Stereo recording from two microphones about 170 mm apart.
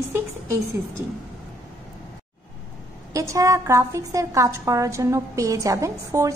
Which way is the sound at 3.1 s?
20° right (ahead or behind).